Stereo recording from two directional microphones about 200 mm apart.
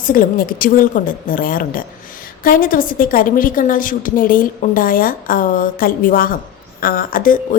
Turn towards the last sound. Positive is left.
turn(degrees=45)  # may be behind; listen again after turning